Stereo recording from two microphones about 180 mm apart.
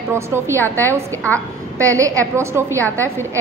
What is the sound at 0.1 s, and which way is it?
A woman's voice, 15° right (ahead or behind).